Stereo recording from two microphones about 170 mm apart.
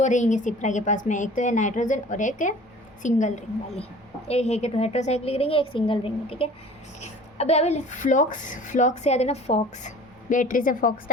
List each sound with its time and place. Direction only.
0.0 s a woman's voice: 45° left (ahead or behind)